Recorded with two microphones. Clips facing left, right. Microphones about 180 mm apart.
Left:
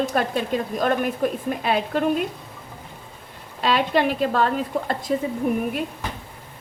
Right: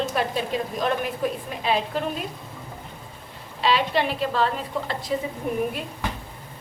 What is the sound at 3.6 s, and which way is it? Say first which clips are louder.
A woman's voice: left 2 dB; 45° left (ahead or behind).